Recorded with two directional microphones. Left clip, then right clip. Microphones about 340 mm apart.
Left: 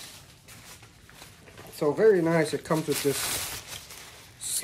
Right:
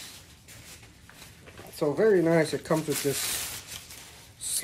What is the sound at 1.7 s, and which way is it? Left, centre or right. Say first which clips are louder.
Speech: left 2 dB; centre.